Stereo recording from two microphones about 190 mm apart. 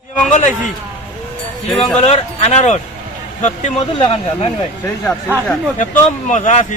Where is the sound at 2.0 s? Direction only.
35° left (ahead or behind).